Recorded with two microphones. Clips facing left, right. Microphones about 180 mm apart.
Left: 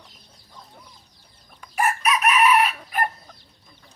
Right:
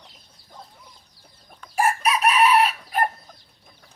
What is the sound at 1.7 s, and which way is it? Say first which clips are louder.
Chicken: right 1 dB; 30° right (ahead or behind).